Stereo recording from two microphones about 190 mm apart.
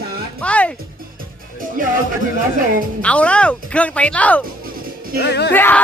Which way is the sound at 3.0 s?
5° left (ahead or behind).